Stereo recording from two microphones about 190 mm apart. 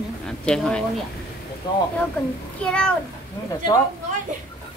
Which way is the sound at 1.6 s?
20° left (ahead or behind).